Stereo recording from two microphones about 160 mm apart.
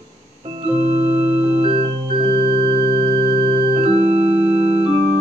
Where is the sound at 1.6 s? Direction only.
35° right (ahead or behind).